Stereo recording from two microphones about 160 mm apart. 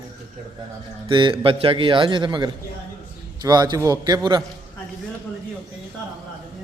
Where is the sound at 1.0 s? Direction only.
30° right (ahead or behind).